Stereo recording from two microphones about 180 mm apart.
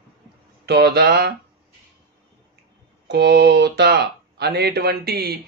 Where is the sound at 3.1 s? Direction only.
70° right (ahead or behind).